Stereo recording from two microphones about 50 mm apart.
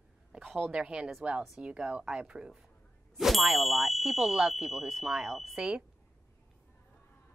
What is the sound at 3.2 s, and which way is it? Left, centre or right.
Speech, centre.